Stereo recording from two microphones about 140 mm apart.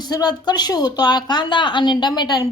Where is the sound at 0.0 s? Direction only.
30° left (ahead or behind).